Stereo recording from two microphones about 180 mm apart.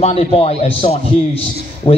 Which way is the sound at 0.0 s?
35° left (ahead or behind).